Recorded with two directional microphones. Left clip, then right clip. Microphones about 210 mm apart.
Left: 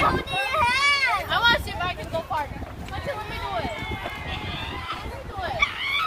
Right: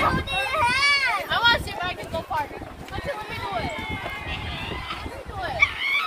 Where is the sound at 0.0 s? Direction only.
10° right (ahead or behind).